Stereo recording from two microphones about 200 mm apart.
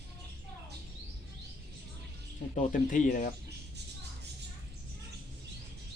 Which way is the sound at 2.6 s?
40° left (ahead or behind).